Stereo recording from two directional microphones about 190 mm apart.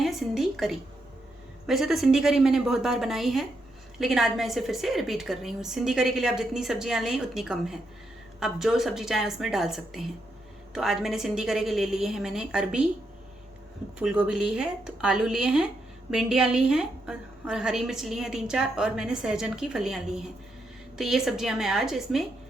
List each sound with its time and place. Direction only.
0.0 s a sound: centre (ahead or behind)
1.6 s a woman's voice: centre (ahead or behind)
14.0 s a woman's voice: 5° right (ahead or behind)